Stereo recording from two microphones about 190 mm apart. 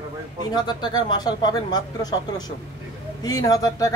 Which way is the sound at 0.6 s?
25° left (ahead or behind).